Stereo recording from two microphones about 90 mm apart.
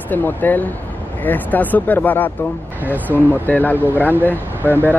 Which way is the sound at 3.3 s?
20° left (ahead or behind).